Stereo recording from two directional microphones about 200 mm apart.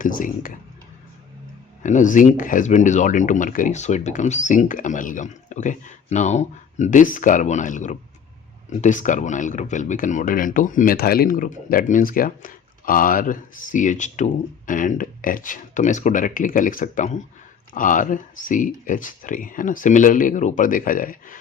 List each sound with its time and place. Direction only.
0.0 s speech: 45° left (ahead or behind)
1.8 s speech: 40° left (ahead or behind)